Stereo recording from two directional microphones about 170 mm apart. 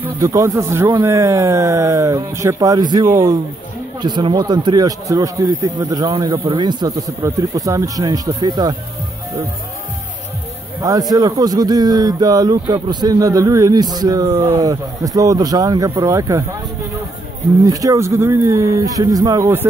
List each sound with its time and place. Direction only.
0.0 s speech: 20° right (ahead or behind)
10.8 s speech: 20° right (ahead or behind)
17.6 s speech: 20° right (ahead or behind)